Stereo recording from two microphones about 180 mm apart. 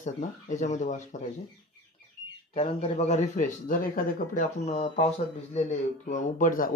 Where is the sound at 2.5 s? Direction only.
35° left (ahead or behind).